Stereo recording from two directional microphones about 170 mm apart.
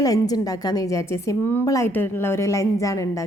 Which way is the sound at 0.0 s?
20° left (ahead or behind).